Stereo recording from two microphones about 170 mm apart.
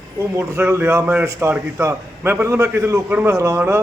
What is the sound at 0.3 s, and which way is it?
A man's voice, 15° right (ahead or behind).